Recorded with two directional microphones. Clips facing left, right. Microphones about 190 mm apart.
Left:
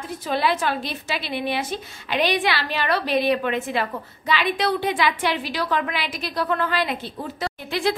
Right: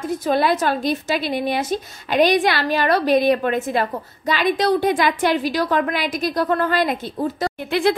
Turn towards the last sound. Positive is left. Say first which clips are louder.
# right 5 dB
turn(degrees=-55)  # may be behind; listen again after turning